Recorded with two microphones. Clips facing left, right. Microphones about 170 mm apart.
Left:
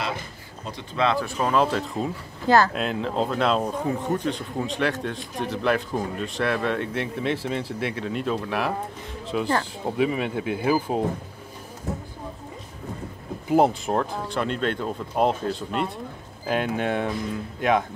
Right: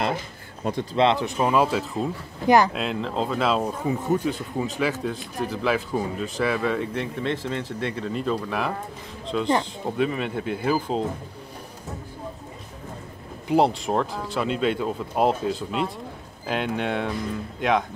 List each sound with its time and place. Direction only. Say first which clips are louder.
0.9 s speech: right 2 dB; 25° right (ahead or behind); by 2.1 s centre (ahead or behind)
2.4 s speech: right 1 dB; 15° right (ahead or behind)
2.7 s speech: left 1 dB; centre (ahead or behind)
13.5 s speech: left 1 dB; centre (ahead or behind)